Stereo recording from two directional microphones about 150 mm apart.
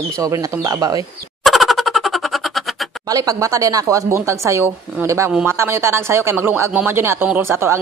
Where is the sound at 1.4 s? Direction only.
Centre (ahead or behind).